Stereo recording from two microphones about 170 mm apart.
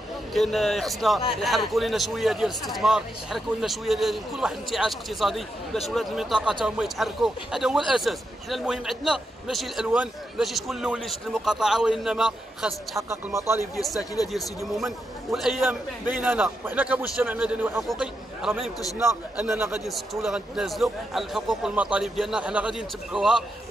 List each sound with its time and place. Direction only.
0.3 s a man's voice: centre (ahead or behind)
14.6 s a man's voice: centre (ahead or behind)
18.9 s a man's voice: 15° right (ahead or behind)
19.9 s a man's voice: centre (ahead or behind)